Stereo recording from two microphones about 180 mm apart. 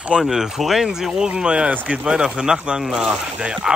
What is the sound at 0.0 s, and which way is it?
Speech, 5° right (ahead or behind).